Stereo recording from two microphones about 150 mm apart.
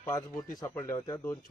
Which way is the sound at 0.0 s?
20° left (ahead or behind).